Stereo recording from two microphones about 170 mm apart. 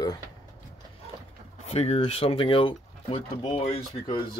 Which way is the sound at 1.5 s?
40° left (ahead or behind).